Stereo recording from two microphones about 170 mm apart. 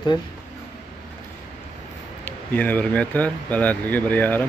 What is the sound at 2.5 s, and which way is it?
Speech, 10° left (ahead or behind).